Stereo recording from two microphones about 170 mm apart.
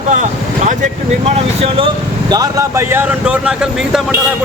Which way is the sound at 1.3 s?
35° right (ahead or behind).